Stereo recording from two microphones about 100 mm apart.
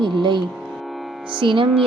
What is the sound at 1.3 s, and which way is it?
Music, 60° right (ahead or behind).